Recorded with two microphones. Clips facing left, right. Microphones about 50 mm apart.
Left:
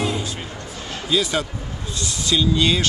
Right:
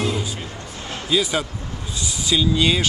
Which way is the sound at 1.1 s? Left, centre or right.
Centre.